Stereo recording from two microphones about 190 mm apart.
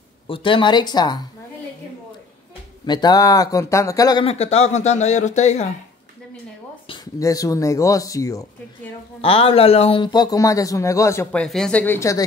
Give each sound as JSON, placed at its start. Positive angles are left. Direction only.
{"t": 0.3, "sound": "speech", "side_deg": 25}
{"t": 2.9, "sound": "speech", "side_deg": 20}
{"t": 6.9, "sound": "speech", "side_deg": 20}
{"t": 9.2, "sound": "speech", "side_deg": 30}
{"t": 11.4, "sound": "speech", "side_deg": 5}